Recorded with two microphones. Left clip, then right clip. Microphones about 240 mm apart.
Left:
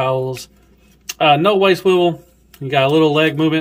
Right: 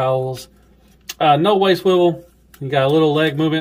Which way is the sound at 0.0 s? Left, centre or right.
Centre.